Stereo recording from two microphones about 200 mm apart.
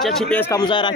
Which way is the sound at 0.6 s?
25° left (ahead or behind).